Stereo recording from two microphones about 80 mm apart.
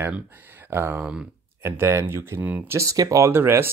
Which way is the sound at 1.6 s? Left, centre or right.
Right.